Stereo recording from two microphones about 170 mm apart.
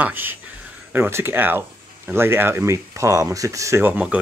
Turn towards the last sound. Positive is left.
turn(degrees=-10)  # may be behind; listen again after turning